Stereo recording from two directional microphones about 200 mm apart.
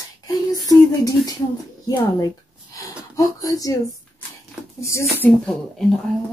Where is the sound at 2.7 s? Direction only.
15° left (ahead or behind).